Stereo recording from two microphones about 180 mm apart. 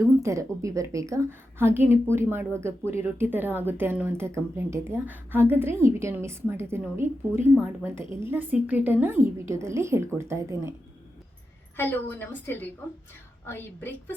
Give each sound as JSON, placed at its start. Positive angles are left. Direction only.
{"t": 0.0, "sound": "a woman's voice", "side_deg": -15}
{"t": 11.8, "sound": "a woman's voice", "side_deg": 10}